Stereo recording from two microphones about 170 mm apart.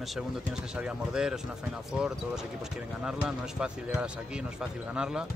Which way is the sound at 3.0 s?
5° right (ahead or behind).